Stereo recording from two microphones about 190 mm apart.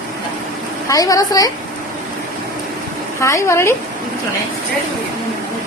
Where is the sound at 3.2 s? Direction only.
15° left (ahead or behind).